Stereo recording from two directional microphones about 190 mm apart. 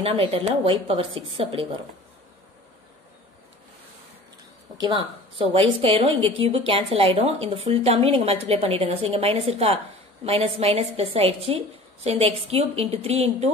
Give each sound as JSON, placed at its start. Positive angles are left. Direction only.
{"t": 0.0, "sound": "a woman's voice", "side_deg": -30}
{"t": 4.7, "sound": "a woman's voice", "side_deg": -25}